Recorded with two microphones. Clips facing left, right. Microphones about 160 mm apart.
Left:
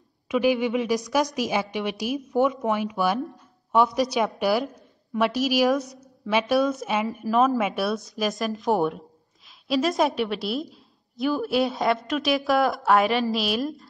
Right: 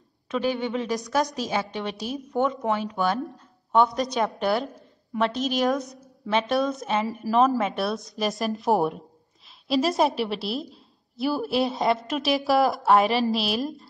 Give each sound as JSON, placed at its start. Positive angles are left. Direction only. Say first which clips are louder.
{"t": 0.3, "sound": "a woman's voice", "louder": "left 4 dB", "side_deg": 10}
{"t": 11.1, "sound": "speech", "louder": "left 1 dB", "side_deg": -35}
{"t": 11.4, "sound": "a woman's voice", "louder": "even", "side_deg": 0}